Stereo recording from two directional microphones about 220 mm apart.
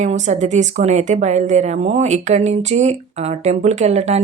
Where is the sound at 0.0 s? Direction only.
30° right (ahead or behind).